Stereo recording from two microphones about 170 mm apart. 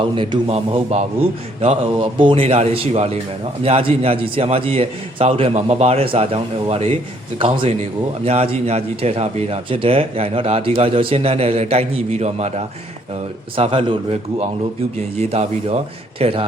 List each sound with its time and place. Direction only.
0.0 s speech: 30° right (ahead or behind)